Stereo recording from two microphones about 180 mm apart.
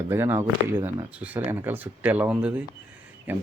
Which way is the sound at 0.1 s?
10° right (ahead or behind).